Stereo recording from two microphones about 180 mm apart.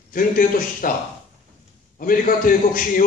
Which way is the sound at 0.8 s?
50° left (ahead or behind).